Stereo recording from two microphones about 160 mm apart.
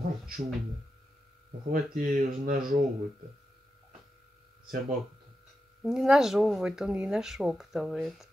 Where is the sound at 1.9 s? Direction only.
65° right (ahead or behind).